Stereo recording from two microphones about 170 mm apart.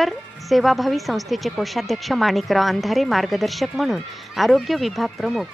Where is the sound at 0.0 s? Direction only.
Centre (ahead or behind).